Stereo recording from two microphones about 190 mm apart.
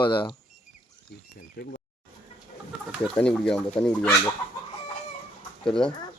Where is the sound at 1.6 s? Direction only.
55° left (ahead or behind).